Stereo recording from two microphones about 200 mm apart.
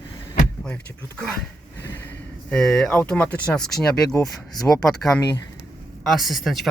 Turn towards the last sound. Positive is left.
turn(degrees=0)  # may be behind; listen again after turning